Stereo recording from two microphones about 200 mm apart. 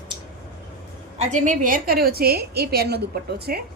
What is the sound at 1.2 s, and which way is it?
A woman's voice, 35° right (ahead or behind).